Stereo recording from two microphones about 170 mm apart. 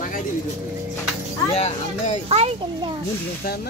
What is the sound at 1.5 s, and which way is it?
Speech, 40° left (ahead or behind).